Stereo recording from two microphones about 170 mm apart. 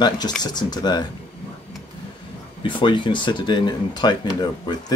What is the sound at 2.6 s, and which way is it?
Speech, 30° left (ahead or behind).